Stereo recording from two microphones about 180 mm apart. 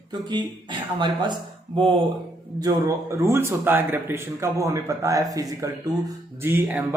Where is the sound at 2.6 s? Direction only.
20° right (ahead or behind).